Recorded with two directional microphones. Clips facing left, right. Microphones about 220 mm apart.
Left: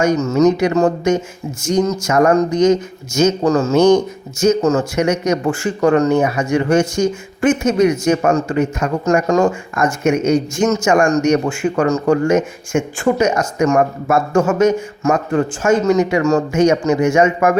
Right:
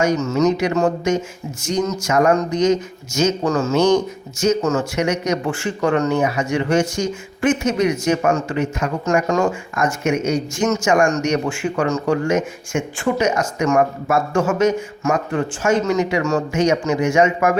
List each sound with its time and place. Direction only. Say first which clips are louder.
0.0 s speech: left 4 dB; 40° left (ahead or behind)
9.7 s speech: left 3 dB; 50° left (ahead or behind)